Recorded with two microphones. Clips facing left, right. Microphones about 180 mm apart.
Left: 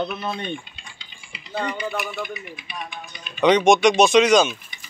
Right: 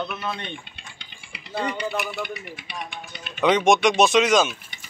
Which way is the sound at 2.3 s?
70° right (ahead or behind).